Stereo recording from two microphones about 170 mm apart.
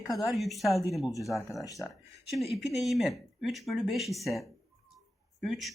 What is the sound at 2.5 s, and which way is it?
Speech, centre (ahead or behind).